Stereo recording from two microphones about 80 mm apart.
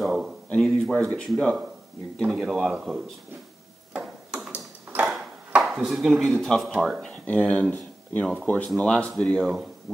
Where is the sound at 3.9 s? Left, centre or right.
Centre.